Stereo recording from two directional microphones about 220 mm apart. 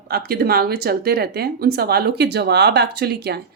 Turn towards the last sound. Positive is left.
turn(degrees=-45)  # may be behind; listen again after turning